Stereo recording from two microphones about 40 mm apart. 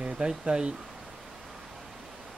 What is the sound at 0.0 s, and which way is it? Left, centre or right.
Speech, centre.